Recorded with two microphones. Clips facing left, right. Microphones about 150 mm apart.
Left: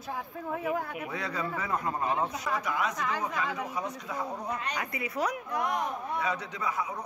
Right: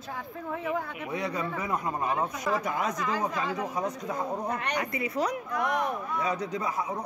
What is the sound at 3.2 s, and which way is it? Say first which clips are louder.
A man's voice: right 2 dB; 35° right (ahead or behind).